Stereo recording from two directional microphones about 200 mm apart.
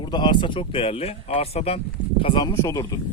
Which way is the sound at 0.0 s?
20° left (ahead or behind).